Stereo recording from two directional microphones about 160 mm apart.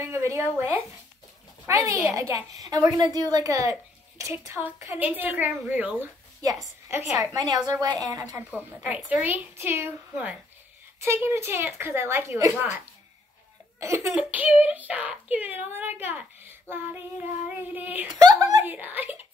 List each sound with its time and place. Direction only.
0.0 s a woman's voice: 15° right (ahead or behind)
8.5 s speech: 10° right (ahead or behind)
13.7 s speech: 20° right (ahead or behind)
18.2 s a woman's voice: 20° right (ahead or behind)
18.7 s speech: 10° right (ahead or behind)